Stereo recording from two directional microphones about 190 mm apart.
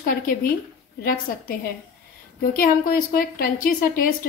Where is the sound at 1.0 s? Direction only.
50° left (ahead or behind).